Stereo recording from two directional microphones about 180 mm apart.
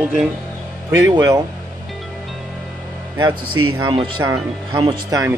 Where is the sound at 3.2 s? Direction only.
25° right (ahead or behind).